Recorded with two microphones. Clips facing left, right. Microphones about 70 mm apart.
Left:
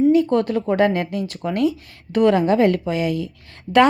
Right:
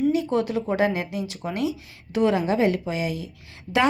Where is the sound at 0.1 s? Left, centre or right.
Left.